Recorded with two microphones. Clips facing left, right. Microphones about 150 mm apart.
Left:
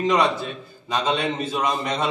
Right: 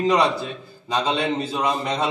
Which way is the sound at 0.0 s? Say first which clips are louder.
Right 1 dB; 35° right (ahead or behind).